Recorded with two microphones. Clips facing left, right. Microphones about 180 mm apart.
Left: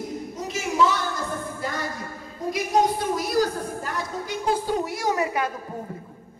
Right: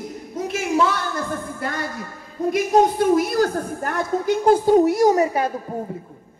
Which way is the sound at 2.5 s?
55° right (ahead or behind).